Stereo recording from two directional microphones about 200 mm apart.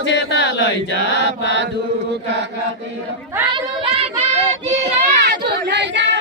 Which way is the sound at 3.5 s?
25° right (ahead or behind).